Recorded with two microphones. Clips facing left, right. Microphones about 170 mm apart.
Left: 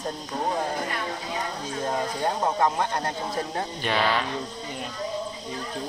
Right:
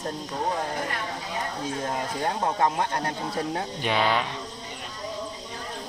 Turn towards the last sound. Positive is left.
turn(degrees=-20)  # may be behind; listen again after turning